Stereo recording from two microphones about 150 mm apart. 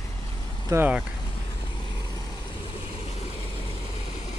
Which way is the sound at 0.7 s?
15° right (ahead or behind).